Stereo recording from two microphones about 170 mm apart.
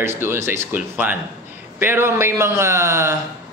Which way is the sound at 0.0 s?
15° right (ahead or behind).